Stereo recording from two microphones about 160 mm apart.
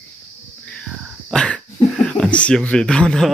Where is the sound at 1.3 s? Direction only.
5° left (ahead or behind).